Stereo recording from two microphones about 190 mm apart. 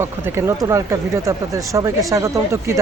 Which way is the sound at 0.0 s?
15° right (ahead or behind).